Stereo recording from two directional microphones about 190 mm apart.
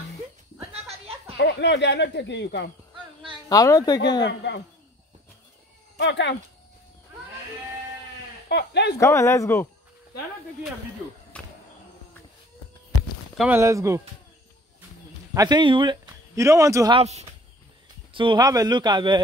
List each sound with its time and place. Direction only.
1.4 s speech: 65° left (ahead or behind)
3.4 s speech: 20° left (ahead or behind)
4.3 s speech: 65° left (ahead or behind)
5.9 s speech: 65° left (ahead or behind)
8.5 s speech: 60° left (ahead or behind)
9.0 s speech: 15° left (ahead or behind)
11.3 s cricket: 5° left (ahead or behind)
13.4 s speech: 10° right (ahead or behind)
15.3 s a man's voice: 20° right (ahead or behind)
17.0 s a man's voice: 35° right (ahead or behind)